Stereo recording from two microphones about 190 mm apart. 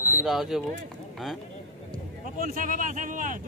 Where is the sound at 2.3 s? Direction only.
45° right (ahead or behind).